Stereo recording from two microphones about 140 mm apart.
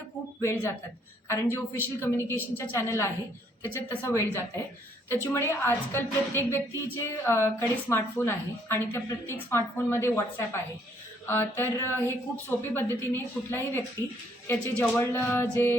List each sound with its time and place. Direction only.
0.4 s a woman's voice: 15° left (ahead or behind)
11.3 s a woman's voice: 15° left (ahead or behind)